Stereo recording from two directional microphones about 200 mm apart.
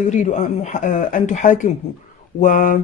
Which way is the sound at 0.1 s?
35° left (ahead or behind).